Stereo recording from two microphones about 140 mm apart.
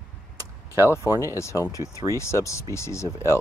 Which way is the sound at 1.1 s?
20° right (ahead or behind).